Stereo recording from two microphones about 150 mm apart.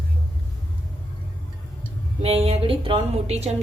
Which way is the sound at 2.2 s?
45° right (ahead or behind).